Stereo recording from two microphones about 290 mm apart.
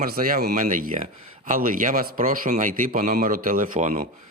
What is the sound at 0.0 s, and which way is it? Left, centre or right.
Speech, right.